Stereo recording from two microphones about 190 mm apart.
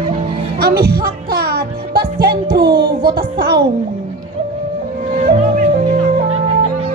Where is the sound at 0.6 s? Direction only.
55° right (ahead or behind).